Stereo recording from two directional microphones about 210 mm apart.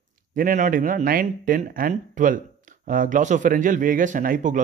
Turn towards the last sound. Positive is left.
turn(degrees=-40)  # may be behind; listen again after turning